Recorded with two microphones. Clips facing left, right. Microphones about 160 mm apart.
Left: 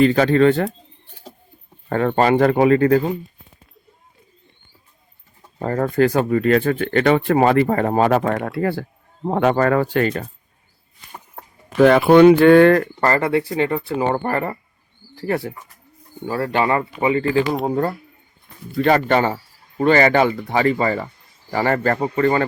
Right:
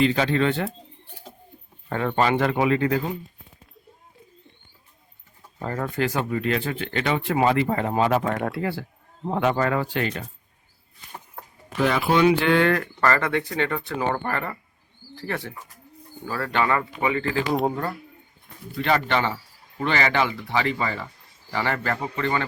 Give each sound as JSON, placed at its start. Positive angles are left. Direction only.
{"t": 0.0, "sound": "speech", "side_deg": 45}
{"t": 1.9, "sound": "speech", "side_deg": 50}
{"t": 5.5, "sound": "speech", "side_deg": 45}
{"t": 8.4, "sound": "speech", "side_deg": 0}
{"t": 8.6, "sound": "speech", "side_deg": 50}
{"t": 11.8, "sound": "speech", "side_deg": 60}
{"t": 14.2, "sound": "speech", "side_deg": 35}
{"t": 18.8, "sound": "speech", "side_deg": 45}